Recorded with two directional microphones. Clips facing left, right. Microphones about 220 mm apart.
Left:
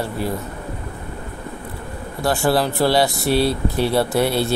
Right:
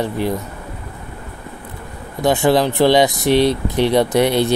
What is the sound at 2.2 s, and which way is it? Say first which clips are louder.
Speech: right 4 dB; 20° right (ahead or behind).